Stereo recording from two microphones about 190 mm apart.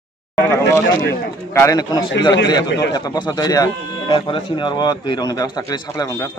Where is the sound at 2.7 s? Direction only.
65° left (ahead or behind).